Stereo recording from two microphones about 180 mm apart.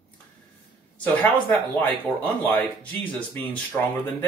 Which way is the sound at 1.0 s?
10° left (ahead or behind).